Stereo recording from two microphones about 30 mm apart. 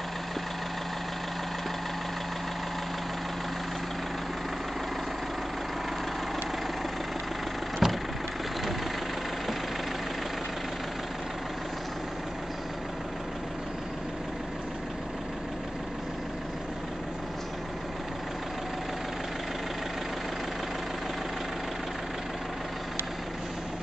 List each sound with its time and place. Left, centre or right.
7.8 s vehicle: centre